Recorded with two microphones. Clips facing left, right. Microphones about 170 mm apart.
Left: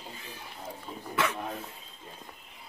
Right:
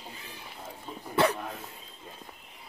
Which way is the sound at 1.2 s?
30° right (ahead or behind).